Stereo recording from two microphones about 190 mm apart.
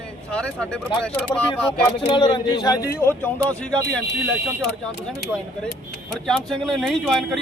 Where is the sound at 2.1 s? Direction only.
25° left (ahead or behind); by 4.0 s 5° left (ahead or behind).